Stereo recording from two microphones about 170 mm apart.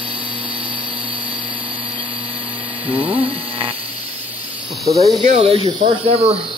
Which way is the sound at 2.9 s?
35° right (ahead or behind).